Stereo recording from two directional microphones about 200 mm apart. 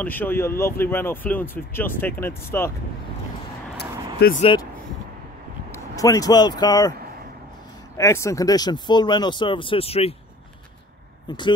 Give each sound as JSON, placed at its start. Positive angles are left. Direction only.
{"t": 0.0, "sound": "speech", "side_deg": 10}
{"t": 3.7, "sound": "vehicle", "side_deg": 50}
{"t": 5.7, "sound": "speech", "side_deg": 15}
{"t": 8.0, "sound": "speech", "side_deg": 15}